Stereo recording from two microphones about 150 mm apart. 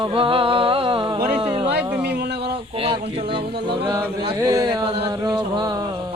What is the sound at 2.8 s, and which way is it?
Chant, 40° right (ahead or behind).